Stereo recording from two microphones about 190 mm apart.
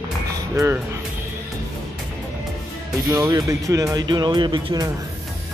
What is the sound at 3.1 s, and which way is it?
Speech, 15° right (ahead or behind).